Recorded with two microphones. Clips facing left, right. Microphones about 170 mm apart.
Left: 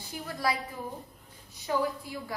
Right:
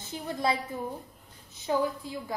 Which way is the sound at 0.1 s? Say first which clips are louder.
Right 2 dB; 25° right (ahead or behind).